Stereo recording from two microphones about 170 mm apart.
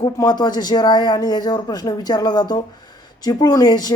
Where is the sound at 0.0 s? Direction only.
25° left (ahead or behind).